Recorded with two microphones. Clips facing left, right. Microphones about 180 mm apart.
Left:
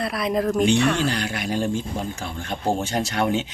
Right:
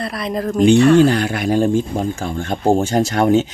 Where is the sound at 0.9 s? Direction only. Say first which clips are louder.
Right 11 dB; 50° right (ahead or behind).